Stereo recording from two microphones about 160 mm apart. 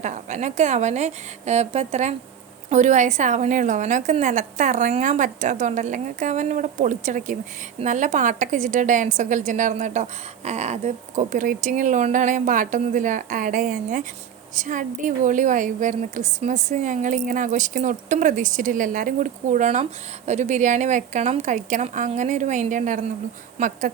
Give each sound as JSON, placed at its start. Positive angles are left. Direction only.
{"t": 0.0, "sound": "a woman's voice", "side_deg": -50}